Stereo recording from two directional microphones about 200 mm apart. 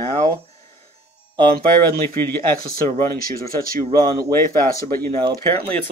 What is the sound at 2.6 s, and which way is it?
Speech, 45° right (ahead or behind).